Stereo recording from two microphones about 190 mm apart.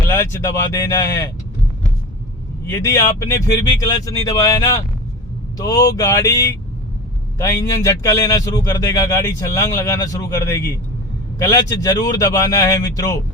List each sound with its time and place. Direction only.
0.1 s speech: 10° left (ahead or behind)
2.6 s speech: 15° left (ahead or behind)